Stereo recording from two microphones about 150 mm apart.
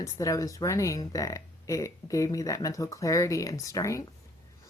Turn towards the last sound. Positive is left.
turn(degrees=20)  # may be behind; listen again after turning